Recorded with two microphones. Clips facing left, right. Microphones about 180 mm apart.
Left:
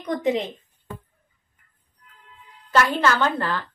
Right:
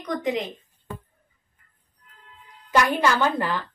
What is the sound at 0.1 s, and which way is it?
Speech, 25° left (ahead or behind).